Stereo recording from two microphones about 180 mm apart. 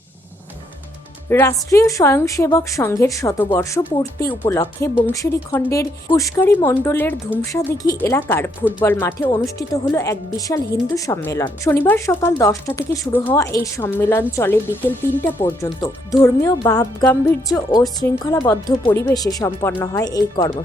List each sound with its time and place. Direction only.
1.3 s speech: 15° left (ahead or behind)